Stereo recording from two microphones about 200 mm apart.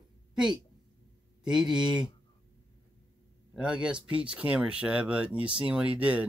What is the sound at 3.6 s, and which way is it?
Speech, 5° right (ahead or behind).